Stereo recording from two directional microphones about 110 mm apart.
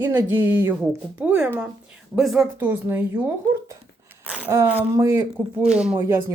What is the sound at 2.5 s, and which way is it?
Speech, 15° right (ahead or behind).